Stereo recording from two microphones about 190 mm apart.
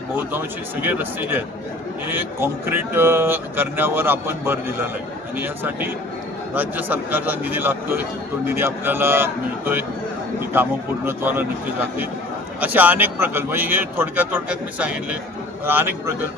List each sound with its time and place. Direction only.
0.2 s speech: 10° right (ahead or behind)
12.5 s speech: 10° right (ahead or behind)